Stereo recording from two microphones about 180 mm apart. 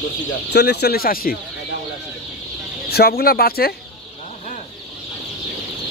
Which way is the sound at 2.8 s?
60° left (ahead or behind).